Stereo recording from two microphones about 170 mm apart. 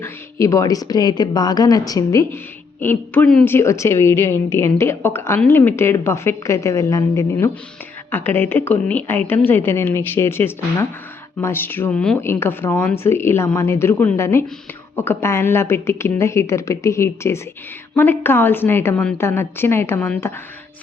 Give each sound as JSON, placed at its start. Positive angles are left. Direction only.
{"t": 0.0, "sound": "speech", "side_deg": 20}